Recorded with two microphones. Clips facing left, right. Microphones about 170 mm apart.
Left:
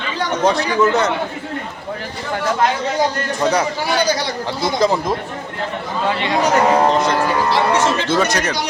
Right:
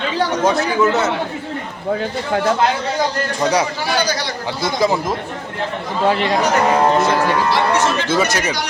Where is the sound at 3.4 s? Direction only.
15° right (ahead or behind).